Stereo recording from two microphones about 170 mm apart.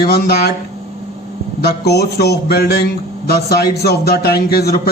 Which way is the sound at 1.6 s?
70° left (ahead or behind).